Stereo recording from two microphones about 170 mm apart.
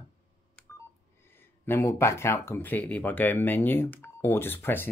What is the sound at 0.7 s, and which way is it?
Telephone dialing, 15° left (ahead or behind).